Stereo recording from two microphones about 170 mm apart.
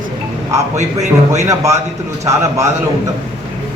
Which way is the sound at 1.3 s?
15° right (ahead or behind).